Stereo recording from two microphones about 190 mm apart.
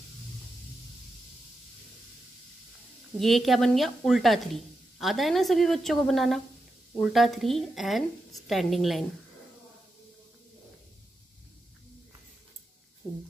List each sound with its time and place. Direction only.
3.2 s a woman's voice: centre (ahead or behind)
13.0 s speech: 15° left (ahead or behind)